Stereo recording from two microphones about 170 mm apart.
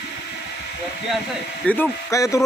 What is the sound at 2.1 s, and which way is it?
Speech, 20° left (ahead or behind).